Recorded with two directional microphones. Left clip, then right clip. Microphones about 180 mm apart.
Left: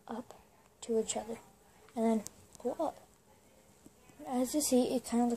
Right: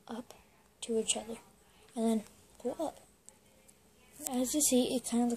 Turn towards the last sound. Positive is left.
turn(degrees=-30)  # may be behind; listen again after turning